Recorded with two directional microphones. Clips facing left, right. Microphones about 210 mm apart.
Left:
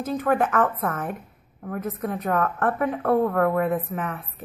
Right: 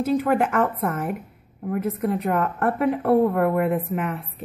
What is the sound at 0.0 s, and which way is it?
A woman's voice, 10° right (ahead or behind).